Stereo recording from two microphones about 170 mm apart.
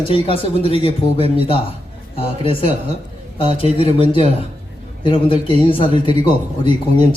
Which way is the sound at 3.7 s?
30° left (ahead or behind).